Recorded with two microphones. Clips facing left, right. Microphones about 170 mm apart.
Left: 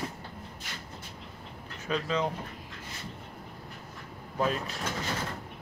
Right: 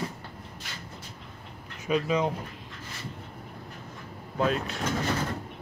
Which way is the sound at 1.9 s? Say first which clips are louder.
Right 4 dB; 15° right (ahead or behind).